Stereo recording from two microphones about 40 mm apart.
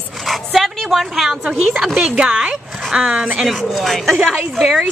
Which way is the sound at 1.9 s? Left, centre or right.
Right.